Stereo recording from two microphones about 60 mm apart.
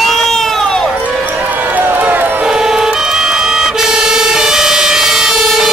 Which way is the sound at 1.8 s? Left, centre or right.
Right.